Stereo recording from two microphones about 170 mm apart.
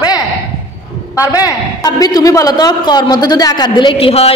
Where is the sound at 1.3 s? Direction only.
20° left (ahead or behind).